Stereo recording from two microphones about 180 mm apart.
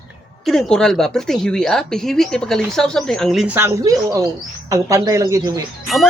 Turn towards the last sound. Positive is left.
turn(degrees=0)  # may be behind; listen again after turning